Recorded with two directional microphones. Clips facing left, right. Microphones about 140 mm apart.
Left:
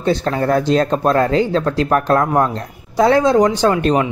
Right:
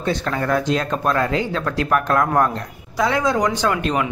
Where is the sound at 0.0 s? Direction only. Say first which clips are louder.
Left 5 dB; 35° left (ahead or behind).